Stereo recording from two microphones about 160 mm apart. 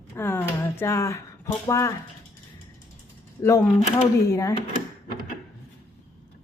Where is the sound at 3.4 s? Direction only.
20° left (ahead or behind).